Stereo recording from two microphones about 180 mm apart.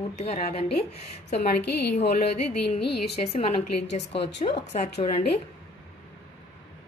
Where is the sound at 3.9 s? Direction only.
70° left (ahead or behind).